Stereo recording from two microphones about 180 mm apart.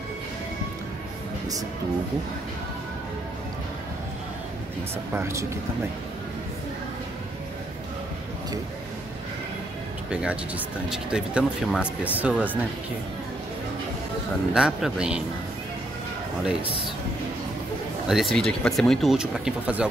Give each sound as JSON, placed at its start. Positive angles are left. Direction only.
{"t": 5.1, "sound": "speech", "side_deg": -15}
{"t": 10.1, "sound": "speech", "side_deg": -5}
{"t": 14.5, "sound": "speech", "side_deg": -5}
{"t": 18.0, "sound": "speech", "side_deg": 0}